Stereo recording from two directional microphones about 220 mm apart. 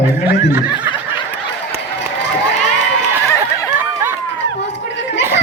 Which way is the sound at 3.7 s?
10° right (ahead or behind).